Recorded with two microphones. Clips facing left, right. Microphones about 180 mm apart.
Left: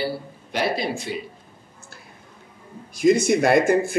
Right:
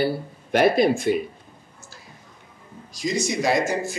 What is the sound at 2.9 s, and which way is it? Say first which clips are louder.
Speech: left 8 dB; 55° left (ahead or behind).